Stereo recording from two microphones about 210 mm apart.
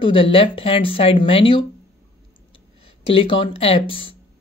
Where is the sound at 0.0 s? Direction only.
25° left (ahead or behind).